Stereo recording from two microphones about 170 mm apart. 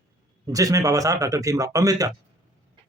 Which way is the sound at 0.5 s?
20° right (ahead or behind).